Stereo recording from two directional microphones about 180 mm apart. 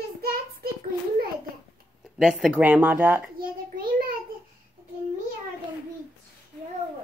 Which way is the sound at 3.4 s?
55° right (ahead or behind).